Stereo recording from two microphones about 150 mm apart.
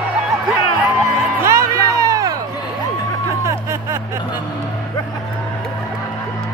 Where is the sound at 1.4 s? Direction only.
20° right (ahead or behind).